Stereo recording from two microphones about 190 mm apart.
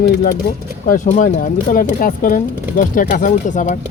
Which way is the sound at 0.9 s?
40° left (ahead or behind).